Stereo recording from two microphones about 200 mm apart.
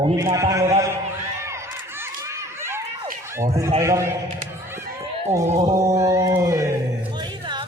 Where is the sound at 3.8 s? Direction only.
15° right (ahead or behind).